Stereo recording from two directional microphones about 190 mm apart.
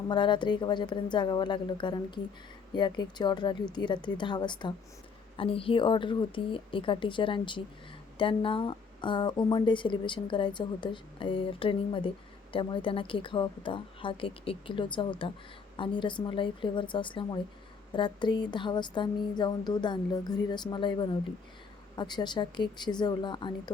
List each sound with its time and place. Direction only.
0.1 s speech: 25° left (ahead or behind)